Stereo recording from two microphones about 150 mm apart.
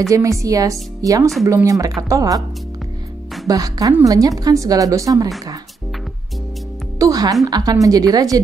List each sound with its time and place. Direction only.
0.1 s a woman's voice: 20° right (ahead or behind)
3.4 s a woman's voice: 25° right (ahead or behind)
7.0 s music: 25° right (ahead or behind)
7.4 s a woman's voice: 25° right (ahead or behind)